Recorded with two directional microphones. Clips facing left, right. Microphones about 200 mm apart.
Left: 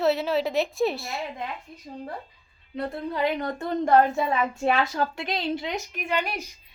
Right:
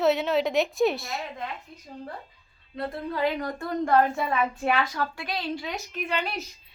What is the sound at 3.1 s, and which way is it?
A woman's voice, 20° left (ahead or behind).